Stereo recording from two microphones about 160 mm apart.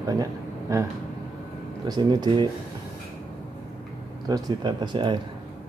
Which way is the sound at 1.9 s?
25° right (ahead or behind).